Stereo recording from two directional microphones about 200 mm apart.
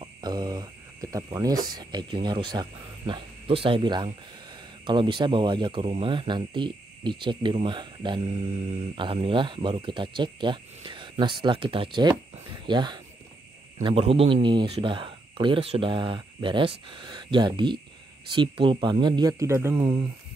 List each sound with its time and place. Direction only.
0.0 s speech: 20° right (ahead or behind)